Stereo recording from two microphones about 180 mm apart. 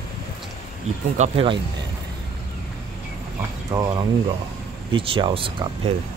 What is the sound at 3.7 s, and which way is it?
Speech, 20° right (ahead or behind).